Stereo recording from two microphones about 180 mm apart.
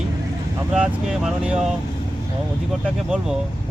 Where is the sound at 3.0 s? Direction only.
5° right (ahead or behind).